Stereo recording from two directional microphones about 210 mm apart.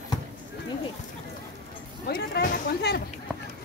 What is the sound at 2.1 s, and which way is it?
Speech, 50° left (ahead or behind).